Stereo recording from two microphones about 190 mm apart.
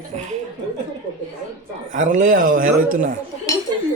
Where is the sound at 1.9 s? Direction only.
40° right (ahead or behind).